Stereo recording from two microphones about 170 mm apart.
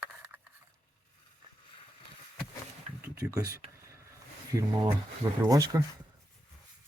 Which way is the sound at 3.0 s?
15° right (ahead or behind).